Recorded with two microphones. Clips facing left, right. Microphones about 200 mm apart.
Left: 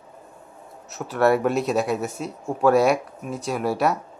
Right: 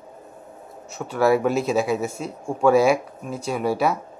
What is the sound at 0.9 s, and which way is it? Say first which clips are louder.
Speech: even; centre (ahead or behind).